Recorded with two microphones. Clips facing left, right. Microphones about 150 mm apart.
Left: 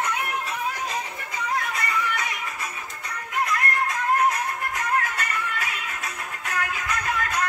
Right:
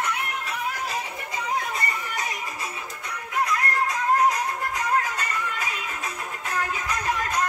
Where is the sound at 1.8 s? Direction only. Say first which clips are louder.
Left 3 dB; 40° right (ahead or behind).